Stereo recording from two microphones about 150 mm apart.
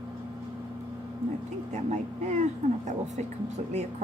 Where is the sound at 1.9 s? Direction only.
50° right (ahead or behind).